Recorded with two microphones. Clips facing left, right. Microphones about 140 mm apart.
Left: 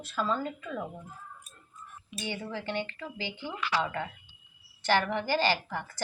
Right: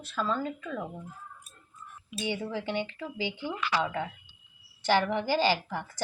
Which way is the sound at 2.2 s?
15° right (ahead or behind).